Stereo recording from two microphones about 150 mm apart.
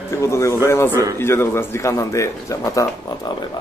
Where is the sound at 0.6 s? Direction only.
20° left (ahead or behind).